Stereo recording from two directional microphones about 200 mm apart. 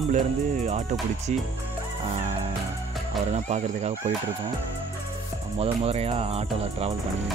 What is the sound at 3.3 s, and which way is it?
Speech, 35° right (ahead or behind).